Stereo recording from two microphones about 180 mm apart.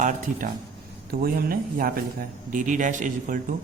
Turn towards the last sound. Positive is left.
turn(degrees=-45)  # may be behind; listen again after turning